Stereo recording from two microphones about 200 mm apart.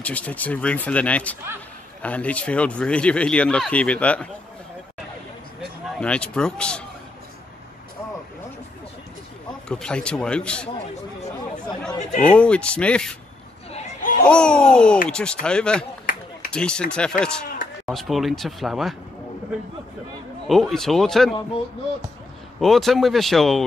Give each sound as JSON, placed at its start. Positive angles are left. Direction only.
{"t": 0.0, "sound": "speech", "side_deg": 5}
{"t": 5.6, "sound": "speech", "side_deg": 5}
{"t": 9.7, "sound": "speech", "side_deg": 5}
{"t": 12.2, "sound": "speech", "side_deg": 5}
{"t": 13.7, "sound": "chatter", "side_deg": 40}
{"t": 14.2, "sound": "speech", "side_deg": 5}
{"t": 16.1, "sound": "run", "side_deg": 40}
{"t": 16.5, "sound": "speech", "side_deg": 5}
{"t": 20.4, "sound": "speech", "side_deg": 0}
{"t": 22.6, "sound": "speech", "side_deg": 0}